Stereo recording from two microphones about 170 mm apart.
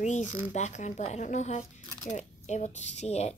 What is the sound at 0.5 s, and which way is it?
A woman's voice, 45° left (ahead or behind).